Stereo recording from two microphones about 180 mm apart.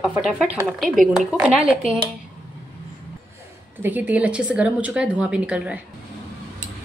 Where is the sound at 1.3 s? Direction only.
5° right (ahead or behind).